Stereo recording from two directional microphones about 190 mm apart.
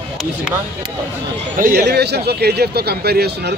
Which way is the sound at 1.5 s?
45° right (ahead or behind).